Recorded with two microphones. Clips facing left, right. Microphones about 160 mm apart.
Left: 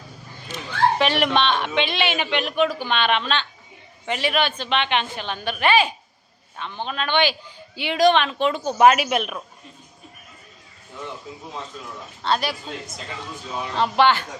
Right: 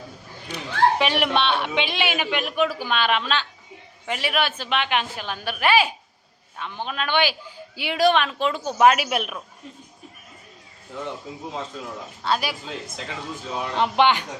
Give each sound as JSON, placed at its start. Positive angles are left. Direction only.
{"t": 0.4, "sound": "a woman's voice", "side_deg": -10}
{"t": 12.2, "sound": "speech", "side_deg": -10}
{"t": 13.7, "sound": "speech", "side_deg": -15}